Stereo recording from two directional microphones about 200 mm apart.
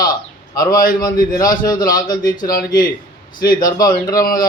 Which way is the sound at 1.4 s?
20° left (ahead or behind).